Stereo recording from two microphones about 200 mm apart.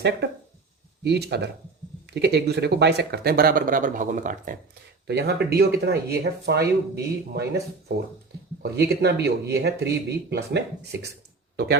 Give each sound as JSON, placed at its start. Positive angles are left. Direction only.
{"t": 1.0, "sound": "speech", "side_deg": -55}
{"t": 5.0, "sound": "speech", "side_deg": -55}